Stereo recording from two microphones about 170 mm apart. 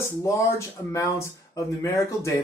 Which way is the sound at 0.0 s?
15° left (ahead or behind).